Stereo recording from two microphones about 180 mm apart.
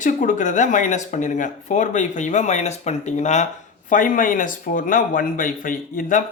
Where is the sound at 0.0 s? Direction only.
45° left (ahead or behind).